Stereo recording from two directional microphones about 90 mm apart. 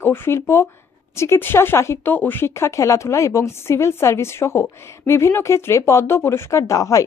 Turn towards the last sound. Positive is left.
turn(degrees=40)  # may be behind; listen again after turning